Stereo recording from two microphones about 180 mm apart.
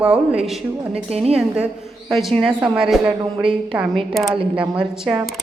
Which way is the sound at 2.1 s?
Centre (ahead or behind).